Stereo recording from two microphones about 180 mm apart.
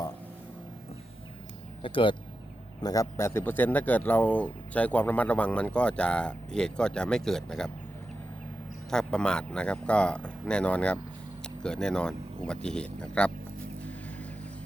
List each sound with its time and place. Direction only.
1.8 s speech: 30° left (ahead or behind)
2.8 s speech: 20° left (ahead or behind); by 7.7 s 5° left (ahead or behind)
8.9 s speech: 5° left (ahead or behind)